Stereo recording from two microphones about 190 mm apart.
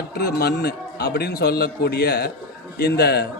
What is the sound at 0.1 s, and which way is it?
A man's voice, 60° left (ahead or behind).